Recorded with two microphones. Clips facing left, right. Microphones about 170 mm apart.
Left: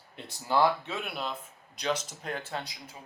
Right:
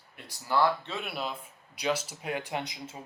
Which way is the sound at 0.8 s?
Centre (ahead or behind).